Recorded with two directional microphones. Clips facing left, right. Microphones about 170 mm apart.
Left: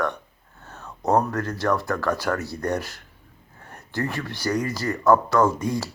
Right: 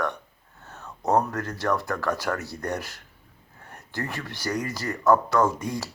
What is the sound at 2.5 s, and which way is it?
Speech, 40° left (ahead or behind).